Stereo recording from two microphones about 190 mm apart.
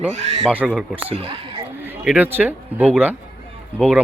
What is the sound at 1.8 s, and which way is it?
Speech, 10° right (ahead or behind).